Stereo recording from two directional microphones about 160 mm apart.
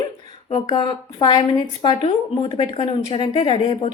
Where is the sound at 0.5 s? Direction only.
30° left (ahead or behind).